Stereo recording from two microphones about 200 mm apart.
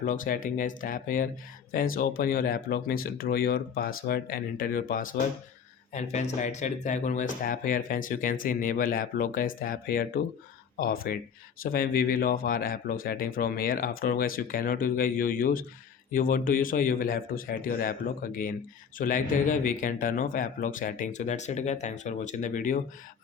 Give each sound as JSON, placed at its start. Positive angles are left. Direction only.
{"t": 0.0, "sound": "speech", "side_deg": 45}